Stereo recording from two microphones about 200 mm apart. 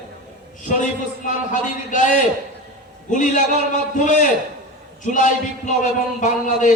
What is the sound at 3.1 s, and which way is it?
A man's voice, 40° left (ahead or behind).